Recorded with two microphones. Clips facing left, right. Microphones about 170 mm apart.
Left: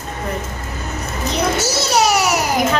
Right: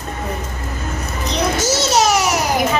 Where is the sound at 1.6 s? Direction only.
10° left (ahead or behind).